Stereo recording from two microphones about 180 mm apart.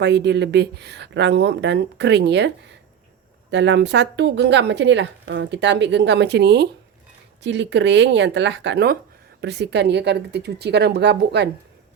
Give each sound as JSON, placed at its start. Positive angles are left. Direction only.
{"t": 0.0, "sound": "speech", "side_deg": -70}
{"t": 7.4, "sound": "speech", "side_deg": -80}